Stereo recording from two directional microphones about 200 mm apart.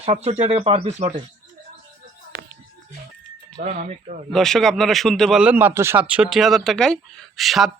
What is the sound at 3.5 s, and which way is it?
Speech, 40° right (ahead or behind).